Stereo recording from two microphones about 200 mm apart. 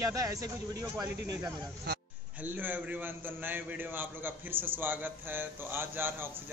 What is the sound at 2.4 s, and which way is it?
A man's voice, 10° right (ahead or behind).